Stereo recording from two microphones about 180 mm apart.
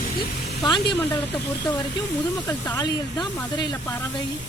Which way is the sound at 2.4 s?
20° left (ahead or behind).